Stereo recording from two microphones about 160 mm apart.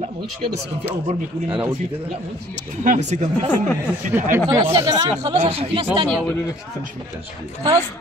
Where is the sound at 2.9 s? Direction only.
50° right (ahead or behind).